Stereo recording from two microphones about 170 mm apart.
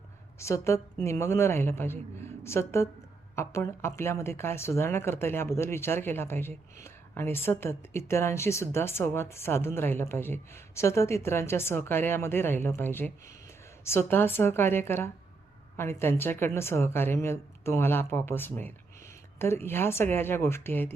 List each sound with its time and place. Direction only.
0.3 s a woman's voice: 15° left (ahead or behind)